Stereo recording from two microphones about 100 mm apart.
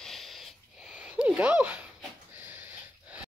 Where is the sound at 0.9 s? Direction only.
10° right (ahead or behind).